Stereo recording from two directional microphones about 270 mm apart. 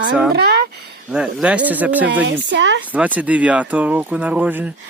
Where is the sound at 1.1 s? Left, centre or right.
Centre.